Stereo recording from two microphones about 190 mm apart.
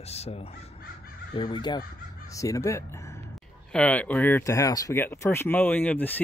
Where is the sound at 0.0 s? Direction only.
35° left (ahead or behind).